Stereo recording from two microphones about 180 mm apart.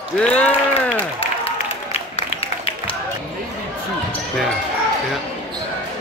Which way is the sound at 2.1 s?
30° left (ahead or behind).